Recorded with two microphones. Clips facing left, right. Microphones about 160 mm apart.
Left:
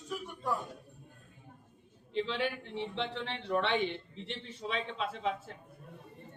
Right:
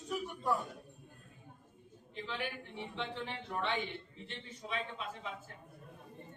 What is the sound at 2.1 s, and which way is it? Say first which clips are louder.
A man's voice: left 8 dB; 85° left.